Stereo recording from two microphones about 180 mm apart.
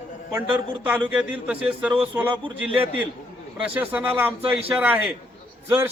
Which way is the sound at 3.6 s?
5° right (ahead or behind).